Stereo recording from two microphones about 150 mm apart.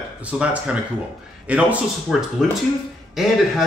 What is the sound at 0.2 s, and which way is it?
Speech, 10° right (ahead or behind).